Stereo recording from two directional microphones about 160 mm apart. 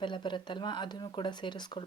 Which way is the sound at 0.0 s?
30° left (ahead or behind).